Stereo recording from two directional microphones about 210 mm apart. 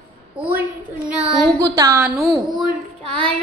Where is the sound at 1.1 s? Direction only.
Centre (ahead or behind).